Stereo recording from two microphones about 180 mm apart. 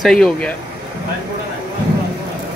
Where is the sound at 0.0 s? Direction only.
5° left (ahead or behind).